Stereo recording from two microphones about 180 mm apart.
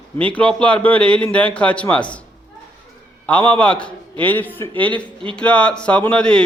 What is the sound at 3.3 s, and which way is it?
Speech, 5° left (ahead or behind).